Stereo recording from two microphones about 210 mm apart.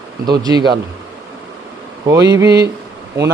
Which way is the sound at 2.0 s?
15° right (ahead or behind).